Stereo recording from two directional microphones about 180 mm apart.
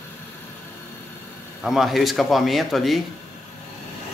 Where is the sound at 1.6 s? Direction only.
Centre (ahead or behind).